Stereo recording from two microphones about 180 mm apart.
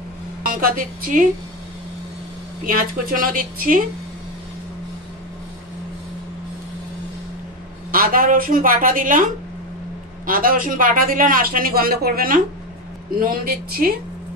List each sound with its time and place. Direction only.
0.4 s a woman's voice: 50° right (ahead or behind)
2.6 s a man's voice: 50° right (ahead or behind)
7.9 s a man's voice: 50° right (ahead or behind)